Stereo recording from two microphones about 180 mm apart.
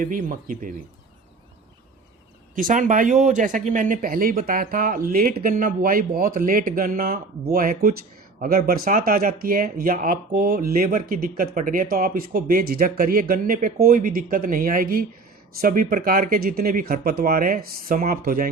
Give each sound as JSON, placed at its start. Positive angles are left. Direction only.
{"t": 0.0, "sound": "speech", "side_deg": -50}
{"t": 2.6, "sound": "speech", "side_deg": -45}